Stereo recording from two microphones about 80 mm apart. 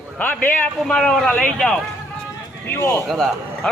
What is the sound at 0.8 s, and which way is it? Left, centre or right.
Speech, centre.